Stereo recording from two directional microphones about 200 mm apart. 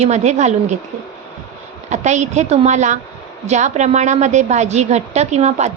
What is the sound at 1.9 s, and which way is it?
A woman's voice, 35° right (ahead or behind).